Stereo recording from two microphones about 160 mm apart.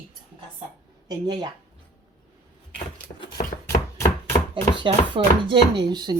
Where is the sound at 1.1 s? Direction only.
25° right (ahead or behind).